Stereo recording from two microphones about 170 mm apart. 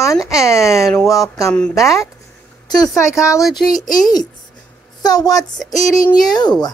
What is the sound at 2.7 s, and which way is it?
Speech, 20° left (ahead or behind).